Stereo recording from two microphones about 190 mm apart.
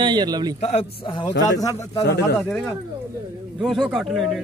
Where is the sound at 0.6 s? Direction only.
35° left (ahead or behind).